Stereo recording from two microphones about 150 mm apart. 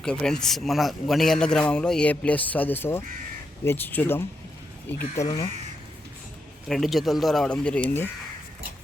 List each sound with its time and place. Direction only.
0.0 s a man's voice: 5° left (ahead or behind); by 5.5 s 25° left (ahead or behind)
6.7 s a man's voice: centre (ahead or behind)